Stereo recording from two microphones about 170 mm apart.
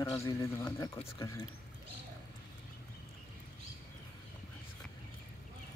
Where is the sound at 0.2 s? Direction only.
15° left (ahead or behind).